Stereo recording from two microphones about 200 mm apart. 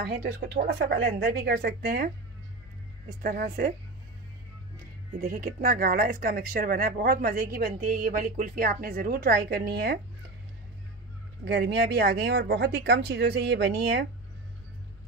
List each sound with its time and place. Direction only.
0.0 s speech: 45° right (ahead or behind)
3.2 s speech: 50° right (ahead or behind)
5.2 s speech: 45° right (ahead or behind)
11.4 s speech: 55° right (ahead or behind)